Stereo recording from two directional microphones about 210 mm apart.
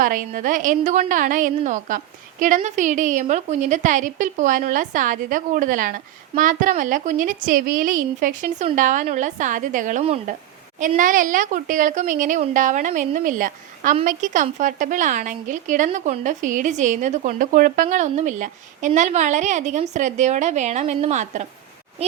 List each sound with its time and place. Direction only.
0.0 s a woman's voice: 40° right (ahead or behind)